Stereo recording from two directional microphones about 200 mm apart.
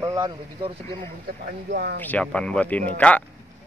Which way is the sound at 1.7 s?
55° right (ahead or behind).